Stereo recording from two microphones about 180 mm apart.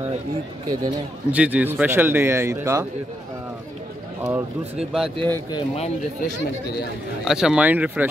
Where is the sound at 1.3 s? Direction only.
10° right (ahead or behind).